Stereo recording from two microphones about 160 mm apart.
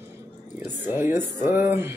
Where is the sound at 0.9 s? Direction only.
15° right (ahead or behind).